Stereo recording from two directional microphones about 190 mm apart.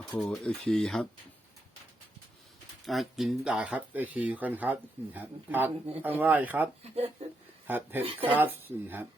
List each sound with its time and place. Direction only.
0.1 s speech: 5° left (ahead or behind)
2.8 s speech: centre (ahead or behind)
6.8 s speech: 35° right (ahead or behind)
7.7 s speech: 10° right (ahead or behind)